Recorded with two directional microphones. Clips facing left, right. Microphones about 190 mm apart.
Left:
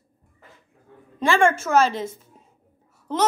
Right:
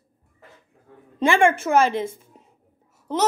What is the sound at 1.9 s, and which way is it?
Speech, 55° right (ahead or behind).